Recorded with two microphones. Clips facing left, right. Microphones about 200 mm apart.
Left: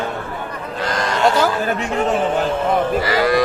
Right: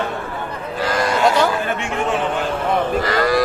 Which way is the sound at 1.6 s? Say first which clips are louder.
Left 3 dB; 40° left (ahead or behind).